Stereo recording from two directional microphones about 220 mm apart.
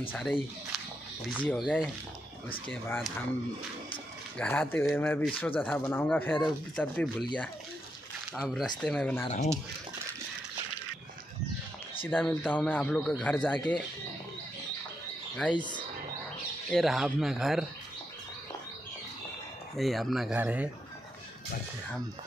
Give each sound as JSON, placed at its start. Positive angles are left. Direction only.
{"t": 0.1, "sound": "speech", "side_deg": 5}
{"t": 4.4, "sound": "speech", "side_deg": 10}
{"t": 8.3, "sound": "speech", "side_deg": 0}
{"t": 9.3, "sound": "speech", "side_deg": 30}
{"t": 12.0, "sound": "speech", "side_deg": 10}
{"t": 16.7, "sound": "speech", "side_deg": 0}
{"t": 19.7, "sound": "speech", "side_deg": 0}